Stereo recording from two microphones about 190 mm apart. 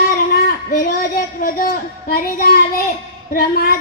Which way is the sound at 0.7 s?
45° left (ahead or behind).